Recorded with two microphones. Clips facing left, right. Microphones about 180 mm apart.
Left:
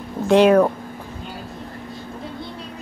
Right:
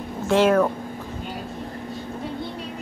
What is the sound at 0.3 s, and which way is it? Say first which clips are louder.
Speech: left 4 dB; 15° left (ahead or behind).